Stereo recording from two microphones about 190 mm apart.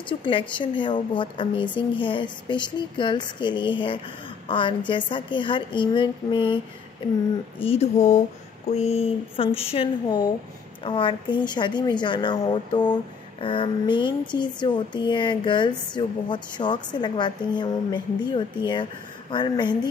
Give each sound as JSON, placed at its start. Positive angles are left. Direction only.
{"t": 0.2, "sound": "a woman's voice", "side_deg": 25}
{"t": 7.6, "sound": "a woman's voice", "side_deg": 35}